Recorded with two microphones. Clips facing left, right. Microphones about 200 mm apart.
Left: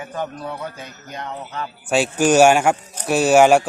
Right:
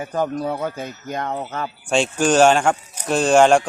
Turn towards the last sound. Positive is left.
turn(degrees=5)  # may be behind; listen again after turning